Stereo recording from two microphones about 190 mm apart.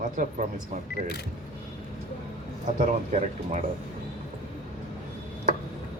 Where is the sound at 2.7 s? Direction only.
40° right (ahead or behind).